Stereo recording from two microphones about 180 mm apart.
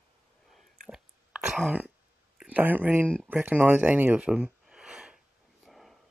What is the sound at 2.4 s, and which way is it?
Speech, 10° right (ahead or behind).